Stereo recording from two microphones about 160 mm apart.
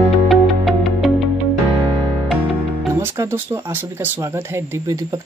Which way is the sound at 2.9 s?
15° right (ahead or behind).